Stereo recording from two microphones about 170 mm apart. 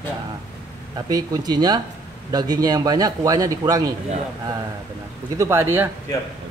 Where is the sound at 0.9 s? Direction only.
25° right (ahead or behind).